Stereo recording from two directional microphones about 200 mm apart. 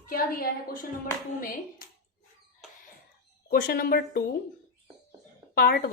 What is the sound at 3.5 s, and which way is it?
Speech, 45° left (ahead or behind).